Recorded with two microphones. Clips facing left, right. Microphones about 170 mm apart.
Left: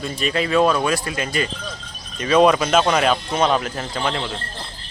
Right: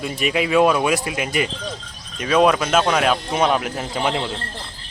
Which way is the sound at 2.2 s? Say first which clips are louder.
Left 1 dB; centre (ahead or behind).